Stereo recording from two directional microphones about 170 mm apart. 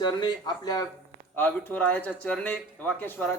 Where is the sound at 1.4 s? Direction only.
10° left (ahead or behind).